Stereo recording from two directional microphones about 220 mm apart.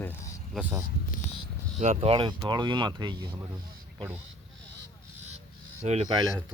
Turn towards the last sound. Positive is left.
turn(degrees=-30)  # may be behind; listen again after turning